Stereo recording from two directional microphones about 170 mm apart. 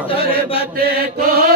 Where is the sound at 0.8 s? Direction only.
60° right (ahead or behind).